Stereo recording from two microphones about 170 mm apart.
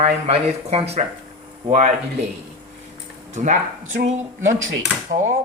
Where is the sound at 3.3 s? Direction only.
45° right (ahead or behind).